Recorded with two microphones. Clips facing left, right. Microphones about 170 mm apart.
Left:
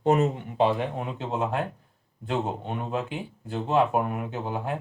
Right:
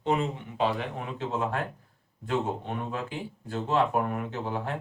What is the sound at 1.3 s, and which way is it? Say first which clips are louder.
Speech: left 2 dB; 20° left (ahead or behind).